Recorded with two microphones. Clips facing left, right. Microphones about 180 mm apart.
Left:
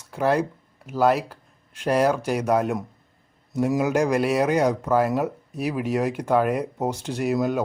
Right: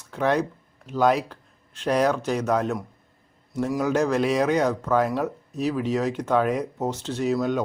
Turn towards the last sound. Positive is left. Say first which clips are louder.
# left 1 dB
turn(degrees=5)  # may be behind; listen again after turning